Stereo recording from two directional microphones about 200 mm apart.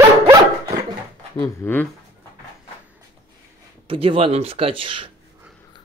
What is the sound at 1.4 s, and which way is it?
Speech, 10° left (ahead or behind).